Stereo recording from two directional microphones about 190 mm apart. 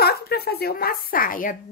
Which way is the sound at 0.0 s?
55° left (ahead or behind).